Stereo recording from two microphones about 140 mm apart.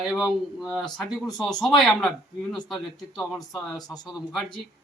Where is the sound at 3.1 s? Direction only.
Centre (ahead or behind).